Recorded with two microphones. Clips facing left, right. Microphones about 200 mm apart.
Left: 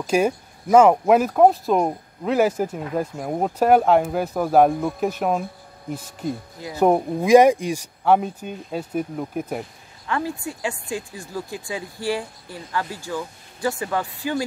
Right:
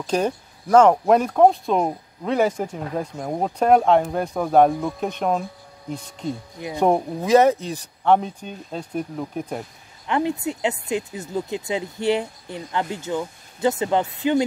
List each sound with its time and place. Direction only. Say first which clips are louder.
0.0 s speech: left 2 dB; 10° left (ahead or behind)
10.0 s speech: right 4 dB; 20° right (ahead or behind)